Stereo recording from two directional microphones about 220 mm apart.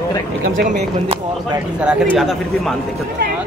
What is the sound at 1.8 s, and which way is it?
Speech, 5° right (ahead or behind).